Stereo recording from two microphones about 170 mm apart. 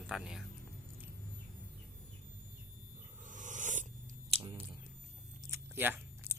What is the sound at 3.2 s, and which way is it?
Dog, 50° right (ahead or behind).